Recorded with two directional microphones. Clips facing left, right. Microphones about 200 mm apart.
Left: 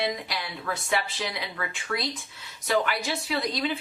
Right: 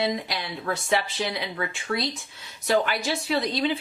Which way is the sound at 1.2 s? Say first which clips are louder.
Right 4 dB; 30° right (ahead or behind).